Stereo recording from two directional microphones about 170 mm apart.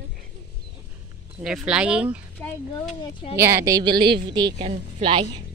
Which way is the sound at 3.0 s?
30° left (ahead or behind).